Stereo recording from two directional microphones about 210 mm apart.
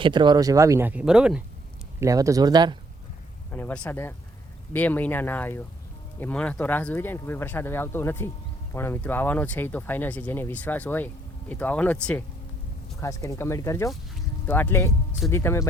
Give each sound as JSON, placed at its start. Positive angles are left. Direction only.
{"t": 0.0, "sound": "speech", "side_deg": -20}
{"t": 2.0, "sound": "speech", "side_deg": -15}
{"t": 3.5, "sound": "speech", "side_deg": 10}